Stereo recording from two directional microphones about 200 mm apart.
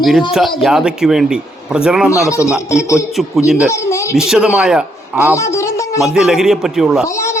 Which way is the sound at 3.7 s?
15° left (ahead or behind).